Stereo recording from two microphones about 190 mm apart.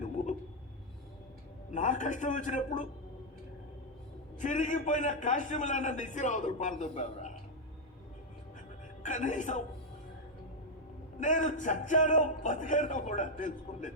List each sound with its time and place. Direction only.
1.7 s a man's voice: 40° left (ahead or behind)
4.4 s a man's voice: 40° left (ahead or behind)
9.0 s a man's voice: 40° left (ahead or behind)
11.2 s a man's voice: 40° left (ahead or behind)